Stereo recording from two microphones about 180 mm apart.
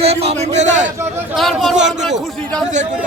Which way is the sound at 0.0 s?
35° right (ahead or behind).